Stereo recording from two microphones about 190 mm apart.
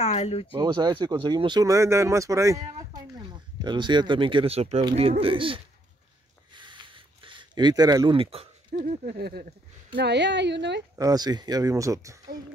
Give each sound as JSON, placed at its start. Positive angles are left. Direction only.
{"t": 0.0, "sound": "speech", "side_deg": 35}
{"t": 0.7, "sound": "speech", "side_deg": -25}
{"t": 6.5, "sound": "a sound", "side_deg": -25}
{"t": 8.7, "sound": "a woman's voice", "side_deg": -55}
{"t": 11.0, "sound": "speech", "side_deg": -20}